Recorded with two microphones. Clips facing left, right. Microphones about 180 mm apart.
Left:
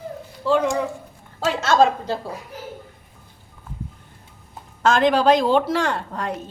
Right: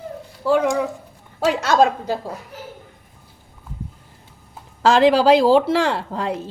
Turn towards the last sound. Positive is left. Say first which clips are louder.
# right 3 dB
turn(degrees=-30)  # may be behind; listen again after turning